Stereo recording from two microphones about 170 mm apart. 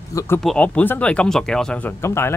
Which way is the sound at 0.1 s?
20° left (ahead or behind).